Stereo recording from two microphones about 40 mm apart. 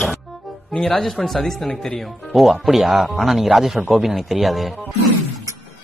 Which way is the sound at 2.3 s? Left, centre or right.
Centre.